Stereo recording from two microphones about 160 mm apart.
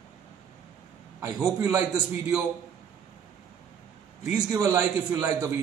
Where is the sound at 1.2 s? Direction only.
20° right (ahead or behind).